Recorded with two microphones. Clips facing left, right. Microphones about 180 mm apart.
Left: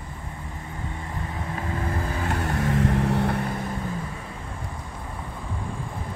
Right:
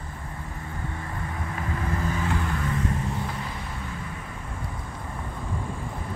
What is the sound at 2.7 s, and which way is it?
Vehicle, 80° left.